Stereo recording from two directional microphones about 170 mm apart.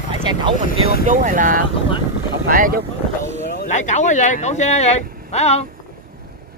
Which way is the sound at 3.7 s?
45° left (ahead or behind).